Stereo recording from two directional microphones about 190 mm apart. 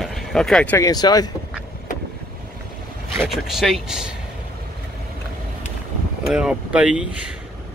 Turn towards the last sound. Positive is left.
turn(degrees=-5)  # may be behind; listen again after turning